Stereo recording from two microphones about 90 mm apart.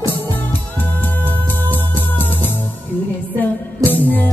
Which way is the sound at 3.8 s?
20° left (ahead or behind).